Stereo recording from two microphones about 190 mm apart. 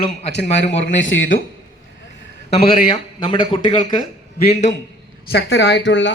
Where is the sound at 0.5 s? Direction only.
75° left (ahead or behind).